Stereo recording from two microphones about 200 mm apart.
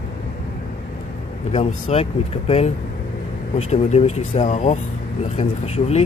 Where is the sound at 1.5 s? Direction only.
35° left (ahead or behind).